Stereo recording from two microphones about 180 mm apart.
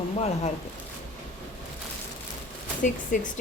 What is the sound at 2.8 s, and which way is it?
Speech, 45° left (ahead or behind).